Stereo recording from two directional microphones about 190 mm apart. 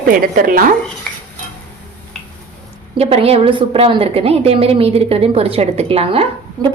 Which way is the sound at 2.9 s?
30° right (ahead or behind).